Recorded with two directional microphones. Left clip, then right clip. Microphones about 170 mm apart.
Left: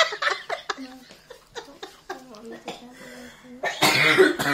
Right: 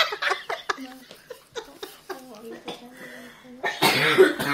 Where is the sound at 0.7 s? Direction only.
20° right (ahead or behind).